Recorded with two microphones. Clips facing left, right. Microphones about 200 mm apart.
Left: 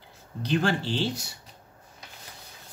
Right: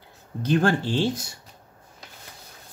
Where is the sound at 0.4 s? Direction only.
50° right (ahead or behind).